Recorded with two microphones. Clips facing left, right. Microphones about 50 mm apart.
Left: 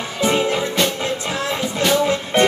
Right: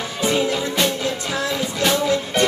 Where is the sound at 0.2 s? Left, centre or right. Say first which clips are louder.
Left 2 dB; left.